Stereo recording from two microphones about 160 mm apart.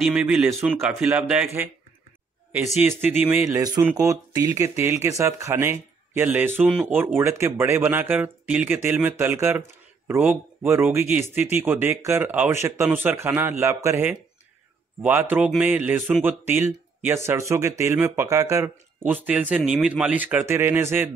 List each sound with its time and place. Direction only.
0.0 s speech: 5° right (ahead or behind)
2.8 s speech: 15° right (ahead or behind)